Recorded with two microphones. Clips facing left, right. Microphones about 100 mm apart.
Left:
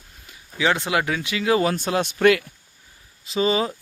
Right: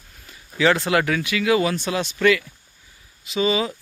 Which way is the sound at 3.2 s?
35° left (ahead or behind).